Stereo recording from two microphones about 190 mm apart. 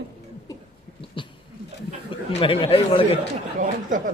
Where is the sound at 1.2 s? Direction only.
25° left (ahead or behind).